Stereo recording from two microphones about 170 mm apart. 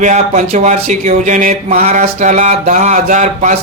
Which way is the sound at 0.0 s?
45° right (ahead or behind).